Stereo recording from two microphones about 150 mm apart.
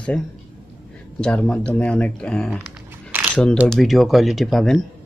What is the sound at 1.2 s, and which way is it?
Speech, 5° left (ahead or behind).